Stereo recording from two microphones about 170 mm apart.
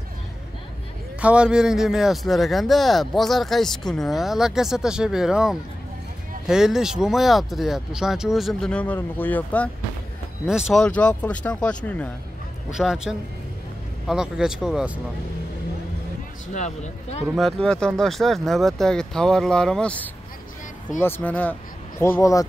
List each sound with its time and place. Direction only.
1.2 s speech: 5° right (ahead or behind); by 9.7 s 10° left (ahead or behind)
10.4 s speech: centre (ahead or behind)
12.7 s speech: 5° right (ahead or behind)
16.5 s speech: 45° left (ahead or behind)
17.4 s speech: 5° left (ahead or behind); by 22.5 s 20° left (ahead or behind)